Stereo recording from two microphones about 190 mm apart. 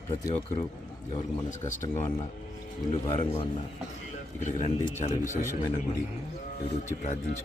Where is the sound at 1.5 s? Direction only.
40° left (ahead or behind).